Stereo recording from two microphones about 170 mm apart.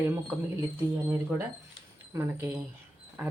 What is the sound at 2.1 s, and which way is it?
Speech, 15° right (ahead or behind).